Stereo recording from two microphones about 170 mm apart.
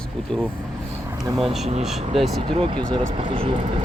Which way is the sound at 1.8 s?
Centre (ahead or behind).